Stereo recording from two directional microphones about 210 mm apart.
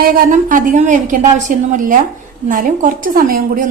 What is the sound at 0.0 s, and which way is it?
A woman's voice, 45° right (ahead or behind).